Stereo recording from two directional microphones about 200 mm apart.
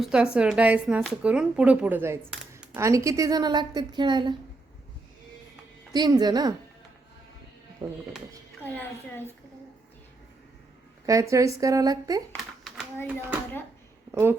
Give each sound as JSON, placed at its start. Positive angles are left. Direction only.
{"t": 0.0, "sound": "a woman's voice", "side_deg": -5}
{"t": 5.9, "sound": "a woman's voice", "side_deg": -20}
{"t": 7.8, "sound": "a woman's voice", "side_deg": -20}
{"t": 8.6, "sound": "a child's voice", "side_deg": 10}
{"t": 11.0, "sound": "speech", "side_deg": -15}
{"t": 12.3, "sound": "a sound", "side_deg": 0}
{"t": 14.1, "sound": "speech", "side_deg": -10}